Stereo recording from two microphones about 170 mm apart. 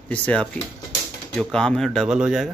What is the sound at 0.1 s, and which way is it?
A man's voice, 5° left (ahead or behind).